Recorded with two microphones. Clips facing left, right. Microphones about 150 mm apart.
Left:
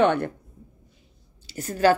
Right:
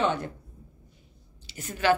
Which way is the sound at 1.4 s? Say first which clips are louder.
Left 7 dB; 40° left (ahead or behind).